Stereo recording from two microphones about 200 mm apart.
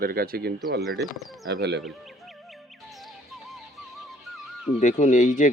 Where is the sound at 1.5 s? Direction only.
60° right (ahead or behind).